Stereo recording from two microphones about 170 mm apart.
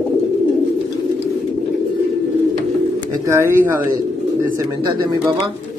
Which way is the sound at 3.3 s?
15° right (ahead or behind).